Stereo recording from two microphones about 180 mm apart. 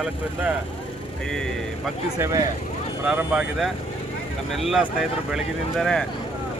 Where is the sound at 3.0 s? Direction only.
5° right (ahead or behind).